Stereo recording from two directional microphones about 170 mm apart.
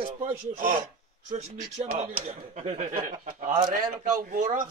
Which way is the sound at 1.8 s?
40° right (ahead or behind).